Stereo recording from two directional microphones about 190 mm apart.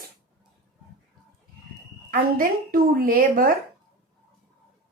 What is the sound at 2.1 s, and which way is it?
Speech, 50° right (ahead or behind).